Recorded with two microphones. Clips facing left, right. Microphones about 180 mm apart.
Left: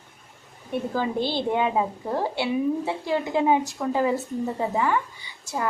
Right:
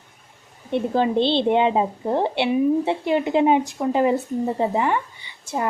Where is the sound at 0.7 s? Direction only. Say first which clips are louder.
Right 6 dB; 25° right (ahead or behind).